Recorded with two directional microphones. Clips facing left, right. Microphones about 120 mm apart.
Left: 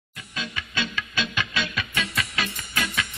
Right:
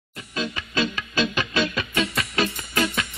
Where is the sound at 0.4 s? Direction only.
35° right (ahead or behind).